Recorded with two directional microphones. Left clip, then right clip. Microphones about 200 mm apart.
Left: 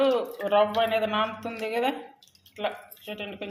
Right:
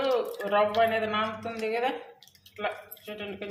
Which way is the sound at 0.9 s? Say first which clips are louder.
Left 2 dB; 30° left (ahead or behind).